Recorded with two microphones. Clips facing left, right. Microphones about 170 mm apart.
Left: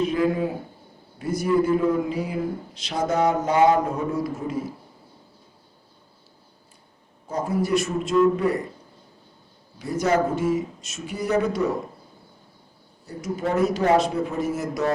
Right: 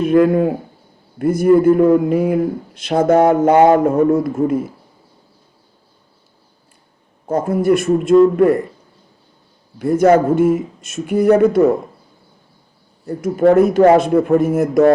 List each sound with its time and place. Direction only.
0.0 s a man's voice: 55° right (ahead or behind)
7.3 s a man's voice: 55° right (ahead or behind)
9.7 s speech: 55° right (ahead or behind)
13.1 s a man's voice: 55° right (ahead or behind)